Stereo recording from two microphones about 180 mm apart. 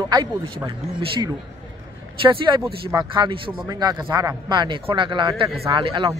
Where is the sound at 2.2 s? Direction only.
30° right (ahead or behind).